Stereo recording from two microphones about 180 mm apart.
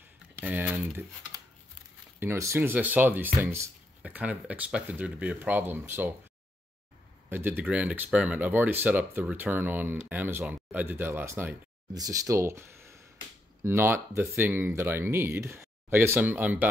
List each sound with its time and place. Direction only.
0.4 s speech: 10° right (ahead or behind)
7.2 s speech: 10° right (ahead or behind)